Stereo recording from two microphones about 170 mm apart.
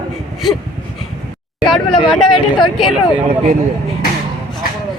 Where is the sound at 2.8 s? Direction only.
Centre (ahead or behind).